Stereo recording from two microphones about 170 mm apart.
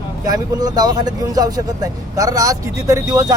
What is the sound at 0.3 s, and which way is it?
Speech, 20° right (ahead or behind).